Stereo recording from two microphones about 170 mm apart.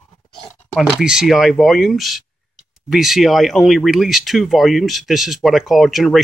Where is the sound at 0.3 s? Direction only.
Centre (ahead or behind).